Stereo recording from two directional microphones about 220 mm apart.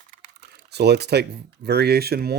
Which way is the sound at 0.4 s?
50° right (ahead or behind).